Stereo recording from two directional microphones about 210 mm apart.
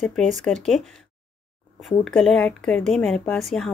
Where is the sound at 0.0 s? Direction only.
Centre (ahead or behind).